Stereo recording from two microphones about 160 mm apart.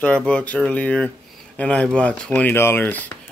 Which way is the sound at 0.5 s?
10° left (ahead or behind).